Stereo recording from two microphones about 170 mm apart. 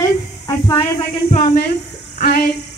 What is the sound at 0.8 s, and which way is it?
Speech, 35° left (ahead or behind).